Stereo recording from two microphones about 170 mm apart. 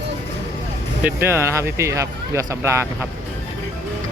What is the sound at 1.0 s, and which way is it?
Speech, 15° right (ahead or behind).